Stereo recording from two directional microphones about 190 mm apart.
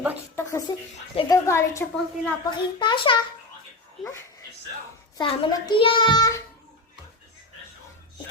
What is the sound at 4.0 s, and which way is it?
Speech, centre (ahead or behind).